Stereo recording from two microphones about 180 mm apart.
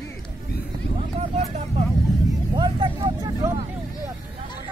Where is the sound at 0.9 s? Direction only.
35° right (ahead or behind).